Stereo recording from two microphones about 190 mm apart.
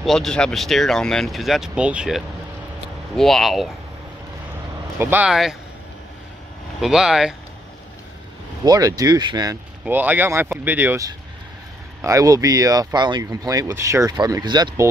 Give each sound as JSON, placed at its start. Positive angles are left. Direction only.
{"t": 0.0, "sound": "speech", "side_deg": 0}
{"t": 4.9, "sound": "speech", "side_deg": -10}
{"t": 6.8, "sound": "speech", "side_deg": -5}
{"t": 8.6, "sound": "speech", "side_deg": -20}